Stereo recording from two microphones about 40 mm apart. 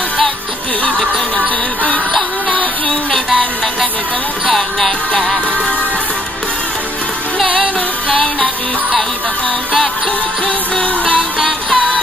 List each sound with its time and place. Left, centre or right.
4.6 s music: centre
10.8 s music: left
11.3 s music: centre